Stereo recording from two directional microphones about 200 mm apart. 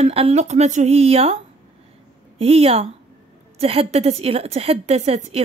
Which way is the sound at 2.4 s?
30° right (ahead or behind).